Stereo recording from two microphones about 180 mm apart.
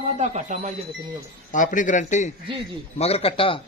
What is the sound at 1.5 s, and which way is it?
A man's voice, 45° left (ahead or behind).